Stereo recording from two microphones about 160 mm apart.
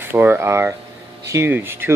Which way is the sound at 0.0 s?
15° right (ahead or behind).